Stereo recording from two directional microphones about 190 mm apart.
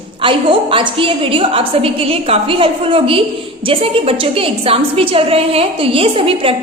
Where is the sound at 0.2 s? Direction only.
25° right (ahead or behind).